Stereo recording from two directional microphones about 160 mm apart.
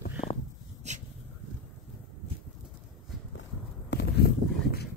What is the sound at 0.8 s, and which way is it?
Speech, 45° right (ahead or behind).